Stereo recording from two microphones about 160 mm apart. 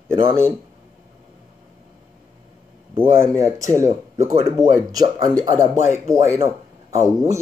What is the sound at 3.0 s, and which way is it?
Speech, 15° right (ahead or behind).